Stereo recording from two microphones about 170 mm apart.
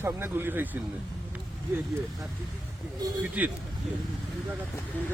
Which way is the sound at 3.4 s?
10° right (ahead or behind).